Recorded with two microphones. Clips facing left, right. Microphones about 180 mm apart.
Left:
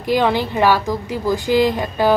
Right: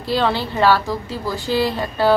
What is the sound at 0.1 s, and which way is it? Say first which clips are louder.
A woman's voice: left 3 dB; 15° left (ahead or behind).